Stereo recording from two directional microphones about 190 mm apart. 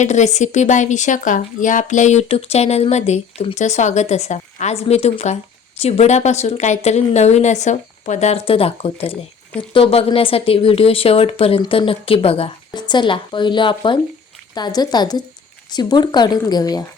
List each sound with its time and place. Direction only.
0.0 s a woman's voice: 40° left (ahead or behind); by 16.8 s 20° left (ahead or behind)